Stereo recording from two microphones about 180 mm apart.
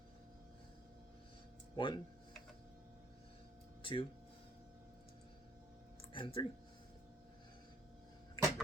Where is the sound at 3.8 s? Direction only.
30° left (ahead or behind).